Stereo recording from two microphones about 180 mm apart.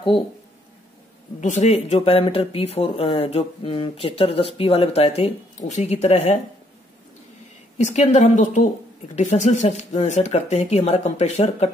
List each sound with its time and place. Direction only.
1.4 s speech: 40° left (ahead or behind)
7.7 s speech: 40° left (ahead or behind)